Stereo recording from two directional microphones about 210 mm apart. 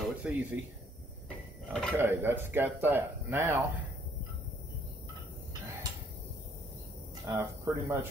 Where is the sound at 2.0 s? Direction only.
10° right (ahead or behind).